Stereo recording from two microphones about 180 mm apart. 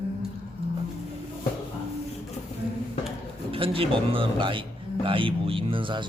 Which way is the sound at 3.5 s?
30° right (ahead or behind).